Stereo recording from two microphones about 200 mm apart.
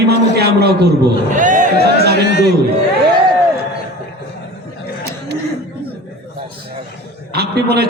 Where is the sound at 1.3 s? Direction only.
40° right (ahead or behind).